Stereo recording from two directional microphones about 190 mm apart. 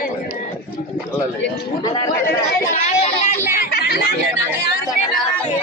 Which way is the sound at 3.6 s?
55° left (ahead or behind).